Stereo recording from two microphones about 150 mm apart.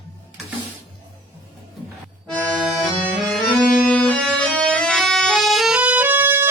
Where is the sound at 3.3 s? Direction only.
5° left (ahead or behind); by 6.4 s 15° right (ahead or behind).